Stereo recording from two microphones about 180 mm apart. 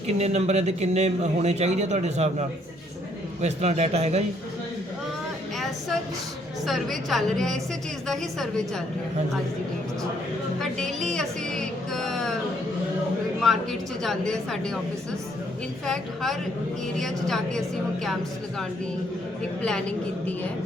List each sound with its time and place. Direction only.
0.2 s a man's voice: 40° right (ahead or behind)
3.4 s a man's voice: 40° right (ahead or behind)
6.7 s a woman's voice: centre (ahead or behind)
10.6 s a sound: centre (ahead or behind)
13.4 s a woman's voice: centre (ahead or behind)
15.9 s a woman's voice: centre (ahead or behind)